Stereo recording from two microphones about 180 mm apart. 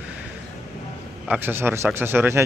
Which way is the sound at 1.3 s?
10° right (ahead or behind).